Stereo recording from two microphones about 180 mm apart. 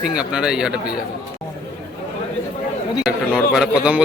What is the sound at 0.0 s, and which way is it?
Speech, 5° right (ahead or behind).